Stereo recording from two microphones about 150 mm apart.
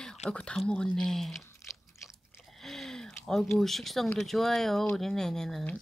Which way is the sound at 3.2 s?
5° left (ahead or behind).